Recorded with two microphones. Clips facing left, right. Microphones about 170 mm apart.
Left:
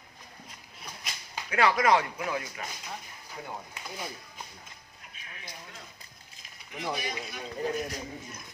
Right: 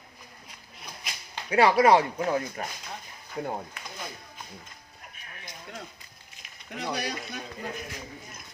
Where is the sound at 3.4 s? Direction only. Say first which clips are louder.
Right 8 dB; 50° right (ahead or behind).